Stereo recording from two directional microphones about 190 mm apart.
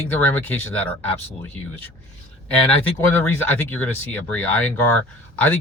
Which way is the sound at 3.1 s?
10° left (ahead or behind).